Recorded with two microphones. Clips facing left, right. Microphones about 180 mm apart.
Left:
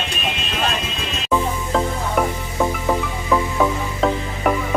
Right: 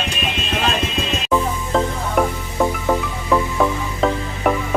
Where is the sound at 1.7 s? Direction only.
Centre (ahead or behind).